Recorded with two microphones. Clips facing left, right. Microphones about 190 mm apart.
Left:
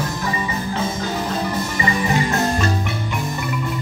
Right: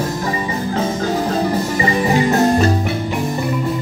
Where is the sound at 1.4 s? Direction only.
35° right (ahead or behind).